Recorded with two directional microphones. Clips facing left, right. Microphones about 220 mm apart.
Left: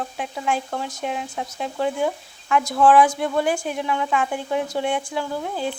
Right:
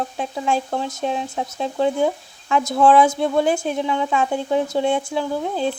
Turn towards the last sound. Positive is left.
turn(degrees=-25)  # may be behind; listen again after turning